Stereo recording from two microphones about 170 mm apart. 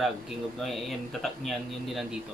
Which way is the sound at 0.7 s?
Centre (ahead or behind).